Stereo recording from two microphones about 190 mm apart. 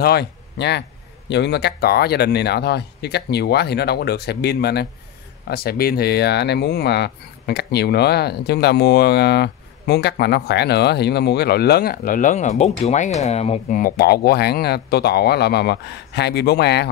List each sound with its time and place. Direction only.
0.0 s speech: 55° left (ahead or behind)